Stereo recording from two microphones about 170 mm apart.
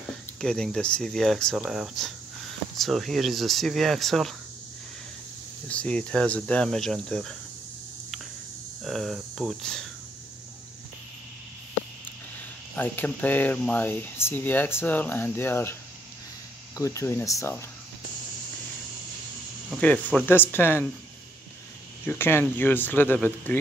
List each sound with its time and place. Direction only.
0.4 s speech: 5° left (ahead or behind)
5.7 s speech: 5° left (ahead or behind)
8.8 s speech: centre (ahead or behind)
12.7 s speech: 10° left (ahead or behind)
16.7 s speech: 15° left (ahead or behind)
19.8 s speech: 10° left (ahead or behind)
22.0 s speech: 15° left (ahead or behind)